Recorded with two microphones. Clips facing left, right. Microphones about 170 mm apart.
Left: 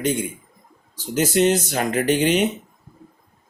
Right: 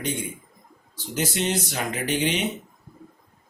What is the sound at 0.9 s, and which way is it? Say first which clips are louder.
Speech: left 7 dB; 45° left (ahead or behind).